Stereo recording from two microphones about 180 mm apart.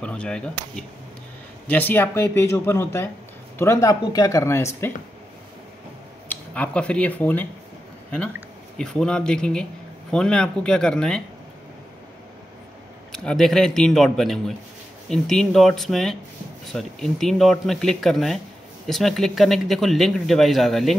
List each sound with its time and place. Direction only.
0.0 s speech: 5° left (ahead or behind)
6.2 s speech: 5° left (ahead or behind)
8.7 s speech: 5° left (ahead or behind)
13.1 s speech: 5° left (ahead or behind)